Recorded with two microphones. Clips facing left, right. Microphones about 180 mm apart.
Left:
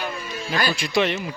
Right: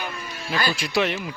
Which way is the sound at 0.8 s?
5° right (ahead or behind).